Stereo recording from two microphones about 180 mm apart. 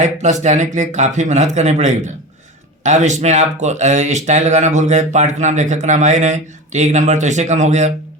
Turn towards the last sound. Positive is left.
turn(degrees=-40)  # may be behind; listen again after turning